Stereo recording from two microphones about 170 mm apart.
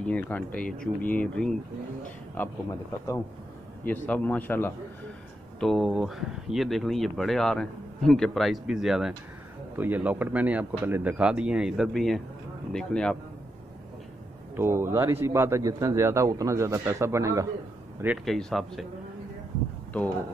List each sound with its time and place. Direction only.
0.0 s a man's voice: 10° left (ahead or behind)
5.6 s a man's voice: centre (ahead or behind)
14.5 s a man's voice: 15° right (ahead or behind)
18.0 s speech: 5° right (ahead or behind)